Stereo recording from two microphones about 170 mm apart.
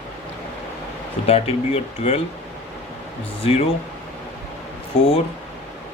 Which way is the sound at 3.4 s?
35° left (ahead or behind).